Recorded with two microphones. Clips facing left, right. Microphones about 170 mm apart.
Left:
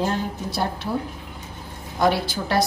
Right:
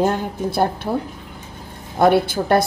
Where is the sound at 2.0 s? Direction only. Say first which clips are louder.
Right 6 dB; 55° right (ahead or behind).